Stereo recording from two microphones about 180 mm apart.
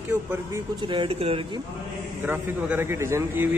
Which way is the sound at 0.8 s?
25° right (ahead or behind).